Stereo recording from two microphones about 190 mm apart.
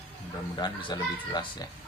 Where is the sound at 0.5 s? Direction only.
20° left (ahead or behind).